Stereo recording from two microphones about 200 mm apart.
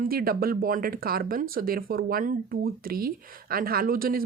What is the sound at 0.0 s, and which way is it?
Speech, 45° right (ahead or behind).